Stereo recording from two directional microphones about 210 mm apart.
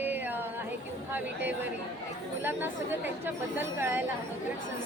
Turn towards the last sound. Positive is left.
turn(degrees=-10)  # may be behind; listen again after turning